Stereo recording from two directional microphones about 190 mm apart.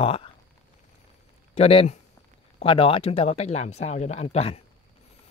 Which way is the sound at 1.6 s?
30° left (ahead or behind).